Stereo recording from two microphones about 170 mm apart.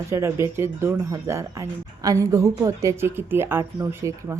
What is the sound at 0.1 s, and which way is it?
Speech, 15° right (ahead or behind).